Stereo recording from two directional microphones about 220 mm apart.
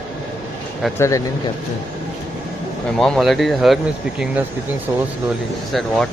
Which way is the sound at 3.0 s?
Centre (ahead or behind).